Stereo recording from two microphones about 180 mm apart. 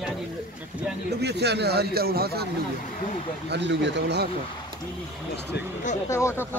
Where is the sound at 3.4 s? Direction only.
75° right (ahead or behind).